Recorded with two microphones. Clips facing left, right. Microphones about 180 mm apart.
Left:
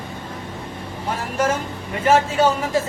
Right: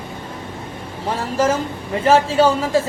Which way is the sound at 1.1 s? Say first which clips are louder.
Right 4 dB; 30° right (ahead or behind).